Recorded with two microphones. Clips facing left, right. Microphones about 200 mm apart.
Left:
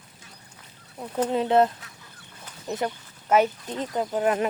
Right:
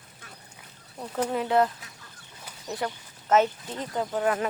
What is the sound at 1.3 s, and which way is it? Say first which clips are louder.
Speech: left 4 dB; 25° left (ahead or behind).